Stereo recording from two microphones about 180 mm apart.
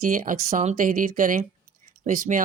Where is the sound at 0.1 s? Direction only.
45° right (ahead or behind).